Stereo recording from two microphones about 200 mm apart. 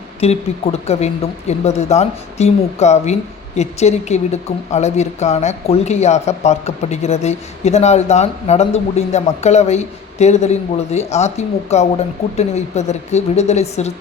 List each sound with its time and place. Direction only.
0.2 s speech: 30° left (ahead or behind)